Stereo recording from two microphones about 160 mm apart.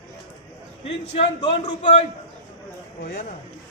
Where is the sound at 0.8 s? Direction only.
35° left (ahead or behind).